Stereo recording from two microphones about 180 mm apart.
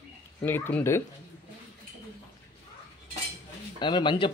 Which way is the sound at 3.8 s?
25° left (ahead or behind).